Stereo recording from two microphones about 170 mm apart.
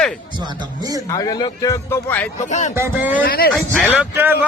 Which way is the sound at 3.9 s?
10° right (ahead or behind).